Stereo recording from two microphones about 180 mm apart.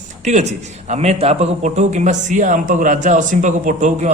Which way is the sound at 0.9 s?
40° right (ahead or behind).